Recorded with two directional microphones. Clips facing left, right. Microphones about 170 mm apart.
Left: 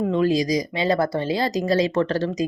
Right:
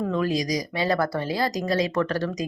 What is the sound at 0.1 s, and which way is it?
Speech, 25° left (ahead or behind).